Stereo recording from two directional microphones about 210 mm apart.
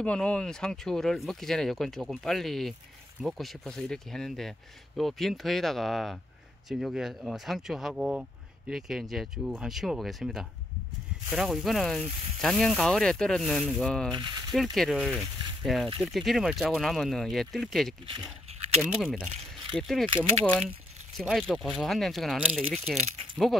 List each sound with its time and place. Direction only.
0.0 s speech: 5° left (ahead or behind)
18.1 s a sound: 25° right (ahead or behind)
18.8 s speech: 5° right (ahead or behind)